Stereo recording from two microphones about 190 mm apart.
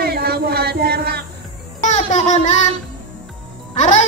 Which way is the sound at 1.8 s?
40° left (ahead or behind).